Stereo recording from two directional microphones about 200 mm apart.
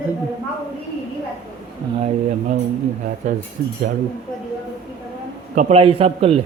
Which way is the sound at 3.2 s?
40° right (ahead or behind).